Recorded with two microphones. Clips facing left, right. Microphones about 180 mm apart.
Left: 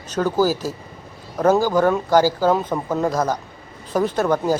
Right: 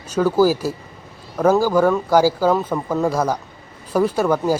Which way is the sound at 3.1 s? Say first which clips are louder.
Right 1 dB; 10° right (ahead or behind).